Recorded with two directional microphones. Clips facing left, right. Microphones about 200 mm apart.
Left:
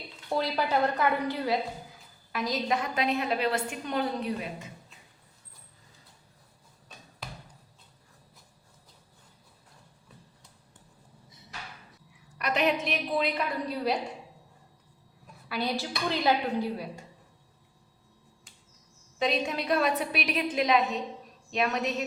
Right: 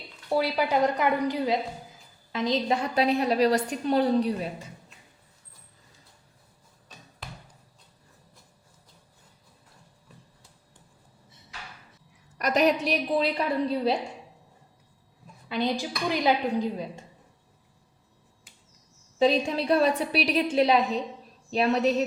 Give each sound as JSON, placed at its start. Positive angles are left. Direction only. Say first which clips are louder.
{"t": 0.3, "sound": "a woman's voice", "louder": "right 3 dB", "side_deg": -10}
{"t": 12.4, "sound": "a sound", "louder": "right 4 dB", "side_deg": -40}
{"t": 12.8, "sound": "a woman's voice", "louder": "right 4 dB", "side_deg": -35}
{"t": 15.4, "sound": "a woman's voice", "louder": "right 4 dB", "side_deg": -20}
{"t": 19.2, "sound": "a woman's voice", "louder": "right 6 dB", "side_deg": -30}